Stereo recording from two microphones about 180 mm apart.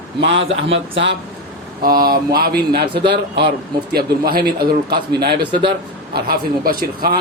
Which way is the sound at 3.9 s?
55° right (ahead or behind).